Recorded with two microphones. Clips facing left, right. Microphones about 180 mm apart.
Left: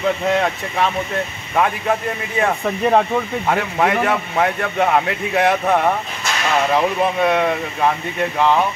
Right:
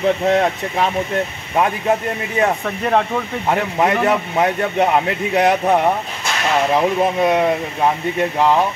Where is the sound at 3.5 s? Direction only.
20° right (ahead or behind).